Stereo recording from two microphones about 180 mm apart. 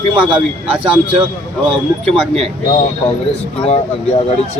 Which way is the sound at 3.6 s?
35° left (ahead or behind).